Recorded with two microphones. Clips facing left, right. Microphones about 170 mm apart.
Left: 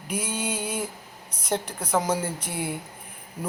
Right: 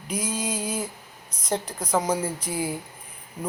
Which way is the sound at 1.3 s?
30° left (ahead or behind).